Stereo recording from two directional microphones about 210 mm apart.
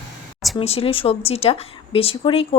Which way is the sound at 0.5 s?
25° left (ahead or behind).